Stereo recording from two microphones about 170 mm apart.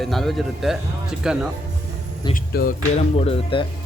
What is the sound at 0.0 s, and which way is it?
Speech, centre (ahead or behind).